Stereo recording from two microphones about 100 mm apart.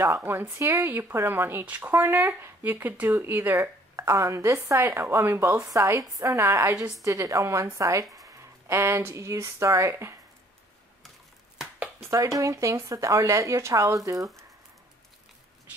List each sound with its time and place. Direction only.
0.2 s a woman's voice: 20° right (ahead or behind)
12.0 s a woman's voice: 35° right (ahead or behind)